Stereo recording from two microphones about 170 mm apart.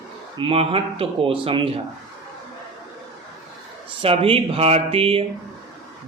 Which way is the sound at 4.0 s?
35° right (ahead or behind).